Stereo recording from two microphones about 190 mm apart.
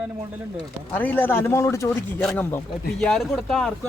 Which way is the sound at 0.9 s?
10° left (ahead or behind).